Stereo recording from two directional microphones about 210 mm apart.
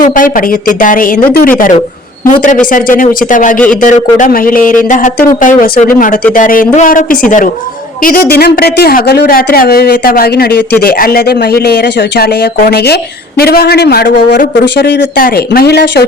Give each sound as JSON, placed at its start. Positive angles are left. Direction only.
{"t": 0.0, "sound": "a man's voice", "side_deg": 40}